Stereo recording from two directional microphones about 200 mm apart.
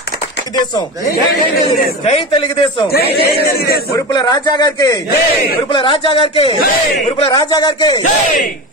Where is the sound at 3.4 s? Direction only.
50° left (ahead or behind).